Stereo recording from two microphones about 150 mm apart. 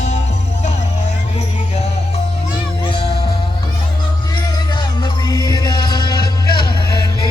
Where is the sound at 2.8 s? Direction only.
40° left (ahead or behind).